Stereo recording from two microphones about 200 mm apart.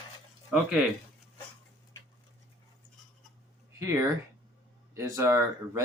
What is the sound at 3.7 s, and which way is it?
Speech, 15° right (ahead or behind).